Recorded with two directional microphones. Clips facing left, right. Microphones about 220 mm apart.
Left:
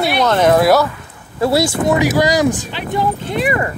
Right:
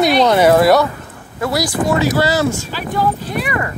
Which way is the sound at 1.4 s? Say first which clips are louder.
Left 3 dB; 25° left (ahead or behind).